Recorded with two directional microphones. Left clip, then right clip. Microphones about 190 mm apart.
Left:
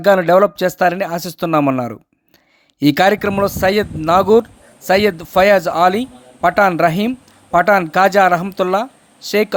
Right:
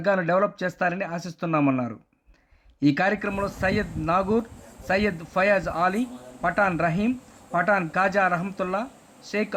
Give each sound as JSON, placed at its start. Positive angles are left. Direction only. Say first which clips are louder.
{"t": 0.0, "sound": "a man's voice", "louder": "left 11 dB", "side_deg": 45}